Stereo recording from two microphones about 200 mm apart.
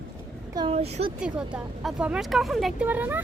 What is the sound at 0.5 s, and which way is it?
Speech, 25° right (ahead or behind).